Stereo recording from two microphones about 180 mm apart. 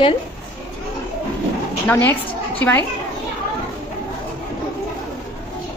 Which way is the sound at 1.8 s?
10° left (ahead or behind).